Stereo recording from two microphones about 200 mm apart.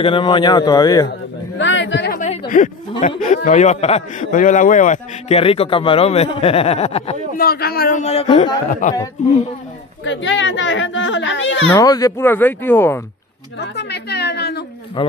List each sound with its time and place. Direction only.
0.0 s a man's voice: 25° left (ahead or behind)
1.6 s a man's voice: 65° left (ahead or behind)
2.1 s a sound: 40° left (ahead or behind)
3.2 s a man's voice: 40° left (ahead or behind)
7.3 s a man's voice: 50° left (ahead or behind)
10.0 s speech: 65° left (ahead or behind)
11.7 s speech: 20° left (ahead or behind)
13.6 s a woman's voice: 55° left (ahead or behind)
15.0 s a man's voice: 25° left (ahead or behind)